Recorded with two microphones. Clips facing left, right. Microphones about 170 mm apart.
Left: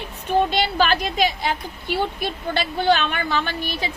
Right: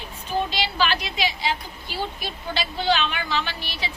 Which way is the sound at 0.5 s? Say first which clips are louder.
Left 5 dB; 50° left (ahead or behind).